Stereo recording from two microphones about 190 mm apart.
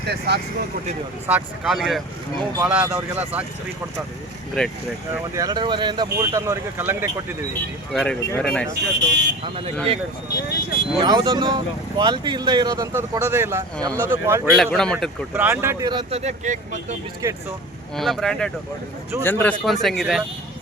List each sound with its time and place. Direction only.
0.3 s speech: 60° right (ahead or behind)
1.3 s speech: centre (ahead or behind)
4.6 s speech: 5° left (ahead or behind)
5.3 s speech: 20° right (ahead or behind)
7.9 s speech: 5° left (ahead or behind)
9.0 s speech: 65° right (ahead or behind)
10.2 s speech: 55° left (ahead or behind)
11.0 s speech: 25° right (ahead or behind)
14.5 s speech: centre (ahead or behind)
15.3 s speech: 10° right (ahead or behind)
15.9 s speech: 30° right (ahead or behind)
17.2 s speech: 15° right (ahead or behind)
17.9 s speech: centre (ahead or behind)